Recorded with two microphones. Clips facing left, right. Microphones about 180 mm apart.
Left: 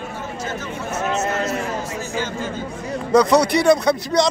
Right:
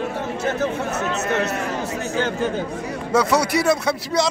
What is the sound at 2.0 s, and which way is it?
Speech, 65° right (ahead or behind).